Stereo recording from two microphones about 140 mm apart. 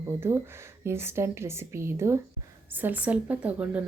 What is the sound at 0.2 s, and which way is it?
Speech, 15° right (ahead or behind).